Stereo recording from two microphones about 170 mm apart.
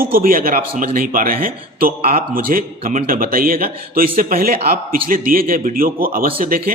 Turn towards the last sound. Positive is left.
turn(degrees=-60)  # may be behind; listen again after turning